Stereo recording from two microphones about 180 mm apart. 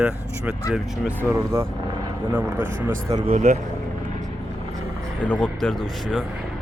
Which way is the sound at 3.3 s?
40° right (ahead or behind).